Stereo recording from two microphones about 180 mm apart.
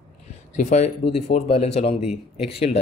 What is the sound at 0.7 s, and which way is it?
Speech, 40° left (ahead or behind).